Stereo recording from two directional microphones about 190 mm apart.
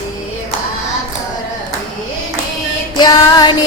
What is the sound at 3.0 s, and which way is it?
Child singing, 20° left (ahead or behind).